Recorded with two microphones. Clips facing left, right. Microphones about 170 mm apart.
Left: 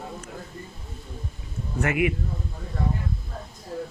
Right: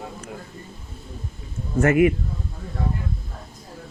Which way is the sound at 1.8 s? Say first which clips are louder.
Right 7 dB; 45° right (ahead or behind).